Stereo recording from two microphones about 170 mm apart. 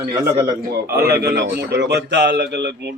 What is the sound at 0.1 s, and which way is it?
Speech, 25° right (ahead or behind).